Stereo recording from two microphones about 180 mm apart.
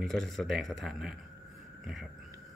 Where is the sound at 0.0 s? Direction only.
Centre (ahead or behind).